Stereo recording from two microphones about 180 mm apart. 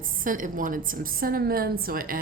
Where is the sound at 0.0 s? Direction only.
50° right (ahead or behind).